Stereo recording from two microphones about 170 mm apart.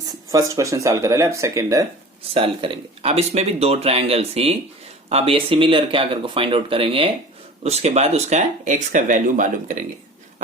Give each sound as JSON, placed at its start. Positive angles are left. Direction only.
{"t": 0.3, "sound": "speech", "side_deg": -20}
{"t": 2.3, "sound": "speech", "side_deg": -35}